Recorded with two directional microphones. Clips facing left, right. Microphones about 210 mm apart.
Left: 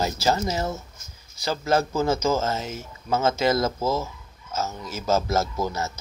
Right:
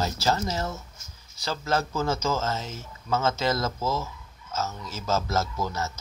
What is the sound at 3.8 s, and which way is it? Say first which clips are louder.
Speech: left 4 dB; 30° left (ahead or behind).